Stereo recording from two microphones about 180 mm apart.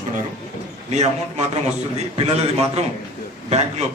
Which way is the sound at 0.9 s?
40° right (ahead or behind).